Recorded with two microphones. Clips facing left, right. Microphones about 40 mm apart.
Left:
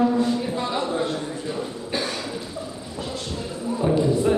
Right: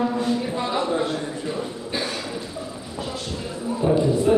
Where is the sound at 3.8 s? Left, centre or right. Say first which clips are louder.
Right 2 dB; centre.